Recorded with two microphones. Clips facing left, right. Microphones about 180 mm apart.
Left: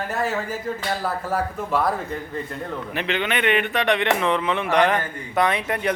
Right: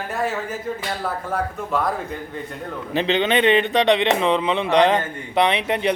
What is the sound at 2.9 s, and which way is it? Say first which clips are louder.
A man's voice: right 7 dB; 25° right (ahead or behind).